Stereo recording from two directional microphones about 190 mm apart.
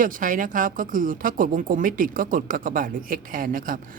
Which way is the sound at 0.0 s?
45° right (ahead or behind).